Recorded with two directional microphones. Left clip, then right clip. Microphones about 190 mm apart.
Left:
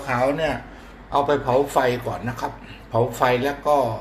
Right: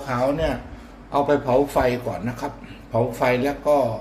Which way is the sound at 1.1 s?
20° right (ahead or behind).